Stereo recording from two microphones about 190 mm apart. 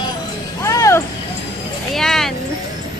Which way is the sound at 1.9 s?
Centre (ahead or behind).